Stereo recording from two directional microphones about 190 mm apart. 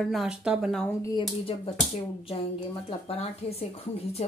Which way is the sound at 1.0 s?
25° left (ahead or behind).